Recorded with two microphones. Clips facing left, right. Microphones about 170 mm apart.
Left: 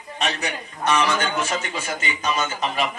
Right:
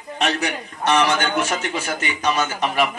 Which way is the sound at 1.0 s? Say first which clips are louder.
Right 3 dB; 70° right (ahead or behind).